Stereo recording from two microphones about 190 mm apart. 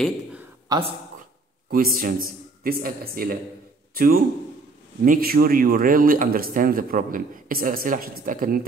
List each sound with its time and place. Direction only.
0.7 s speech: 25° right (ahead or behind)
1.7 s speech: 50° right (ahead or behind)